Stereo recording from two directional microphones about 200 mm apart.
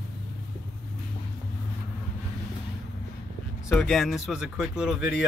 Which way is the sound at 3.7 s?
Centre (ahead or behind).